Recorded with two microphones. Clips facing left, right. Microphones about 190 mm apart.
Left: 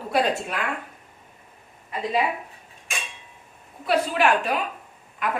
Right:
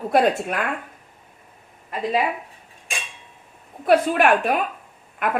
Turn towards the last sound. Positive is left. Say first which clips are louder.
# right 3 dB
turn(degrees=-55)  # may be behind; listen again after turning